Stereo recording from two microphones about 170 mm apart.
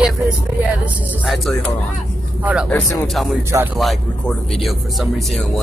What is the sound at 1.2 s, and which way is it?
Speech, centre (ahead or behind).